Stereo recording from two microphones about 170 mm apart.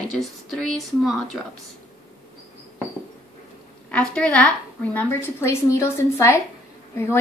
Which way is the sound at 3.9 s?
5° left (ahead or behind).